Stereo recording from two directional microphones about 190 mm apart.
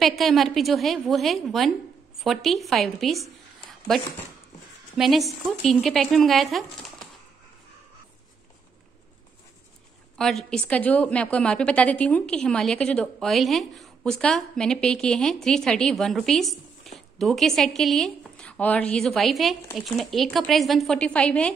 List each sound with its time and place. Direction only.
0.0 s a woman's voice: centre (ahead or behind)
4.9 s a woman's voice: centre (ahead or behind)
10.1 s a woman's voice: 5° left (ahead or behind)